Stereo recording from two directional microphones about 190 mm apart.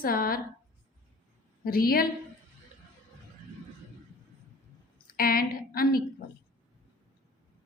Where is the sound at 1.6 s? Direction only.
50° left (ahead or behind).